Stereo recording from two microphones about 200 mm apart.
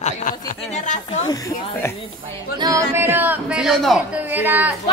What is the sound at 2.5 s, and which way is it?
Speech, 20° right (ahead or behind).